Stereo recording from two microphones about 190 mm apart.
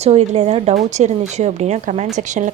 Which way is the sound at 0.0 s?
35° right (ahead or behind).